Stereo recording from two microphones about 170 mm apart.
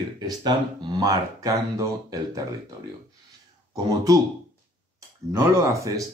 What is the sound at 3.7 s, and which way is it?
Speech, 20° right (ahead or behind).